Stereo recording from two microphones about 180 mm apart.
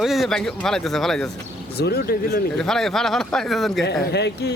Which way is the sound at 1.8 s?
60° left (ahead or behind).